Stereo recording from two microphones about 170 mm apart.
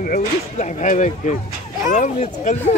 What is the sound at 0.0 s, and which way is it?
Speech, 50° left (ahead or behind).